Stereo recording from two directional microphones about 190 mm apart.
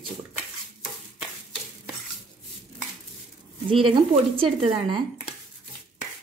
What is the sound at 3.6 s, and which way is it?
A woman's voice, 30° right (ahead or behind).